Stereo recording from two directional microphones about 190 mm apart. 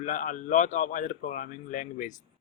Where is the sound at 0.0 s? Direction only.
40° left (ahead or behind).